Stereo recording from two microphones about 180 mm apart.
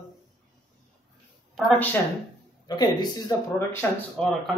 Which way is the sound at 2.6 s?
25° left (ahead or behind).